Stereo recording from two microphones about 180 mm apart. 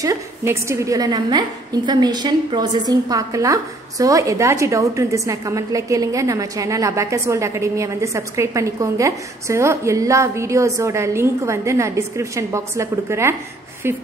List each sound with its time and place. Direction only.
0.0 s a woman's voice: 15° right (ahead or behind)